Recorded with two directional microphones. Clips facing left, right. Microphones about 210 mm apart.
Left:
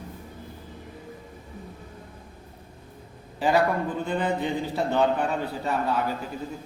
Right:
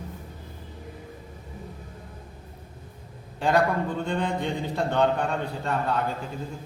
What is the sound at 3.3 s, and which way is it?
A man's voice, 5° left (ahead or behind).